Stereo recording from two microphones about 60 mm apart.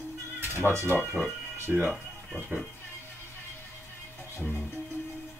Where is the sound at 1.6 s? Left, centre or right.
Right.